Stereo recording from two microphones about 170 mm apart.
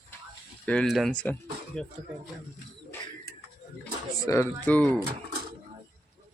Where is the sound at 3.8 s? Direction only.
15° left (ahead or behind).